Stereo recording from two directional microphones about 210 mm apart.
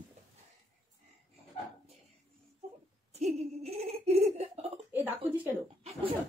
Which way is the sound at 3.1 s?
30° right (ahead or behind).